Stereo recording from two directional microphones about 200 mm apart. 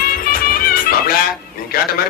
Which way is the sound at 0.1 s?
45° left (ahead or behind).